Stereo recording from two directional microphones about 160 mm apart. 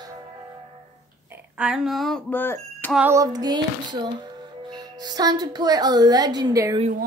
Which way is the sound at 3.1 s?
20° right (ahead or behind).